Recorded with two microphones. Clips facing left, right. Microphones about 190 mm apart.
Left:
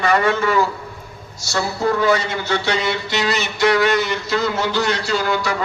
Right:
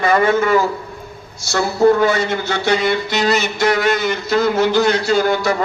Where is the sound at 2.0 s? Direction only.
50° right (ahead or behind).